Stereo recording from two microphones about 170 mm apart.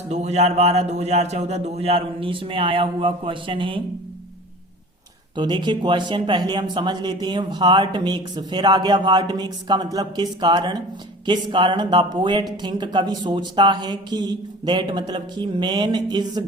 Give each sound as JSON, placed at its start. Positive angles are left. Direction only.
{"t": 0.1, "sound": "a man's voice", "side_deg": -40}
{"t": 5.4, "sound": "a man's voice", "side_deg": -25}